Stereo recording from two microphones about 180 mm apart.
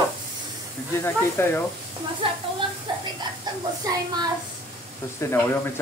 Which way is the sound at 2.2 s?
30° right (ahead or behind).